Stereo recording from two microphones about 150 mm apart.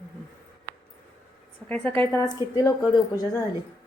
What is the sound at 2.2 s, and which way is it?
A woman's voice, 25° left (ahead or behind).